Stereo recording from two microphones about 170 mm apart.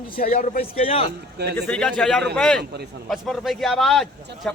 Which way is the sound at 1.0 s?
75° right (ahead or behind).